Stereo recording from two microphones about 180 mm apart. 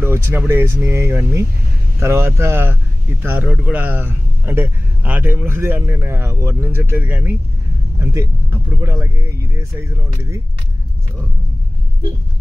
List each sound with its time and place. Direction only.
0.0 s speech: 15° right (ahead or behind)